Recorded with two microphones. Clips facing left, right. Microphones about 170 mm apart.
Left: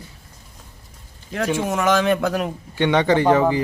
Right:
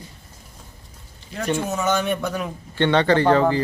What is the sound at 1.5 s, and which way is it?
Speech, 90° left.